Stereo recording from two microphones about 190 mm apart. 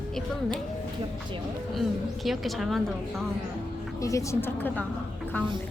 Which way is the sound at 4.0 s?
15° left (ahead or behind).